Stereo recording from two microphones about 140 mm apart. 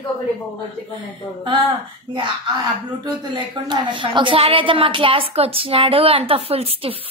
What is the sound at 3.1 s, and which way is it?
A woman's voice, 35° right (ahead or behind).